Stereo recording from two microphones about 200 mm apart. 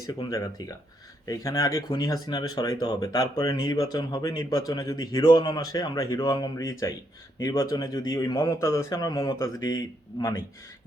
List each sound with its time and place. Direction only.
0.1 s speech: 20° left (ahead or behind)